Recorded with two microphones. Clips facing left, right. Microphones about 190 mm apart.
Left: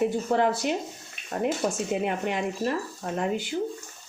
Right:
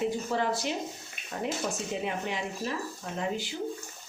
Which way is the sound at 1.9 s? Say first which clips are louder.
Left 5 dB; 55° left (ahead or behind).